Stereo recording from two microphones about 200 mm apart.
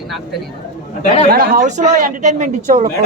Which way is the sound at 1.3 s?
40° right (ahead or behind).